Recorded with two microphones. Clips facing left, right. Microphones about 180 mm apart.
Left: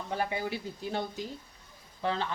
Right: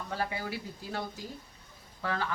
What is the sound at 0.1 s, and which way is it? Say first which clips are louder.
Speech: left 3 dB; 20° left (ahead or behind).